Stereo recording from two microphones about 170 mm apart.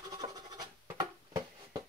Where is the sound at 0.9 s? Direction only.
20° right (ahead or behind).